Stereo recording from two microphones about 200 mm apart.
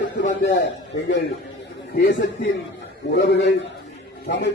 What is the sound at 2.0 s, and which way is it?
A man's voice, 60° left (ahead or behind).